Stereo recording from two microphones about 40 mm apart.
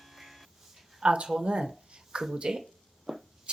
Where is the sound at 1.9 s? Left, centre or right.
Right.